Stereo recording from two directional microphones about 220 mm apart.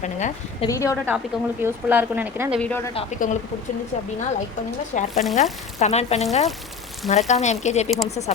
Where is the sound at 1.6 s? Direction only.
10° right (ahead or behind).